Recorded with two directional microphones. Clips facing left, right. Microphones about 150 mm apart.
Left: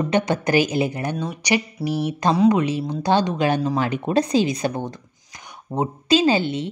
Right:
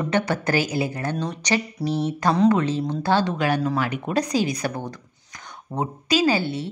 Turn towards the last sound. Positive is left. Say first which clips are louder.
# left 2 dB
turn(degrees=20)  # may be behind; listen again after turning